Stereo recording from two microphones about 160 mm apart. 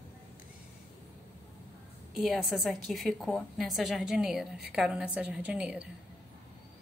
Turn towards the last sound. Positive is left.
turn(degrees=-5)  # may be behind; listen again after turning